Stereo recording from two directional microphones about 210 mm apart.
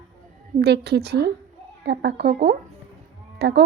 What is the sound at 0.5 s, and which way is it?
A woman's voice, 55° right (ahead or behind).